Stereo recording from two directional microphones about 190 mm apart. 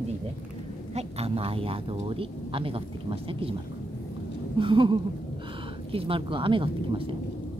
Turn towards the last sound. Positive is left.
turn(degrees=-30)  # may be behind; listen again after turning